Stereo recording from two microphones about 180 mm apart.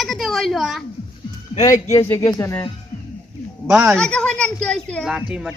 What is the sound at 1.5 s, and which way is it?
Speech, 20° left (ahead or behind).